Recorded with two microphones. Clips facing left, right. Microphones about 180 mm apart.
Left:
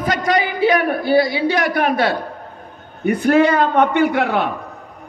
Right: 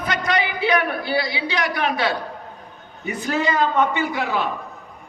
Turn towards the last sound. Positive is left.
turn(degrees=60)  # may be behind; listen again after turning